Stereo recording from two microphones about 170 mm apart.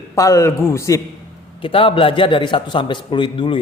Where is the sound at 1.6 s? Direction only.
30° left (ahead or behind).